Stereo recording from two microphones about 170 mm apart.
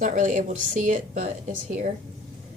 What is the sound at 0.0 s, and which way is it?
A woman's voice, 50° right (ahead or behind).